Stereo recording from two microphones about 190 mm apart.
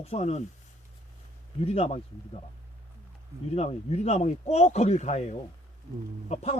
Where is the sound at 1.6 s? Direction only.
30° left (ahead or behind).